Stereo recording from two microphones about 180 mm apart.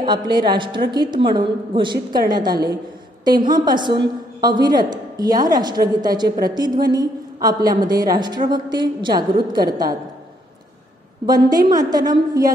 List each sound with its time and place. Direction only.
0.0 s a woman's voice: 25° right (ahead or behind)
11.2 s a woman's voice: 20° right (ahead or behind)